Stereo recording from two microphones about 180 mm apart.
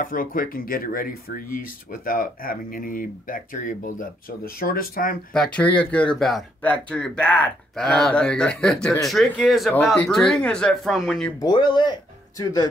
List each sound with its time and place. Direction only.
0.0 s speech: 50° left (ahead or behind)
5.3 s speech: 5° left (ahead or behind)
11.3 s speech: 25° left (ahead or behind)